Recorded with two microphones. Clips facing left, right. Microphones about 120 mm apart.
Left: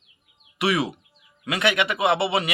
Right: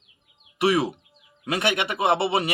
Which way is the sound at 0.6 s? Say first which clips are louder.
Right 2 dB; 50° right (ahead or behind).